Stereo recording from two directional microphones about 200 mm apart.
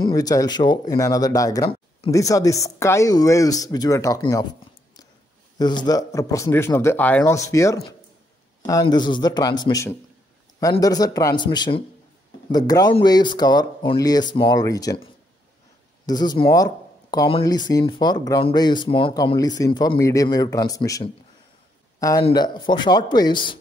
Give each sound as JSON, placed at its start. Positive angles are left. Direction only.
{"t": 0.0, "sound": "speech", "side_deg": 20}
{"t": 5.6, "sound": "speech", "side_deg": 20}
{"t": 16.1, "sound": "speech", "side_deg": 20}
{"t": 22.2, "sound": "speech", "side_deg": 20}